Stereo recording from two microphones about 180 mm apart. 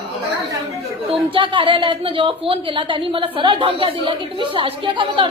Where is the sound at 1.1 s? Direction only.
30° right (ahead or behind).